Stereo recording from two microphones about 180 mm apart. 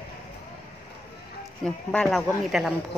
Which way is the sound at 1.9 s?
5° left (ahead or behind).